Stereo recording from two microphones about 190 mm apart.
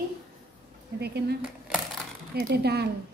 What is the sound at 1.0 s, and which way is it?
Speech, 60° right (ahead or behind).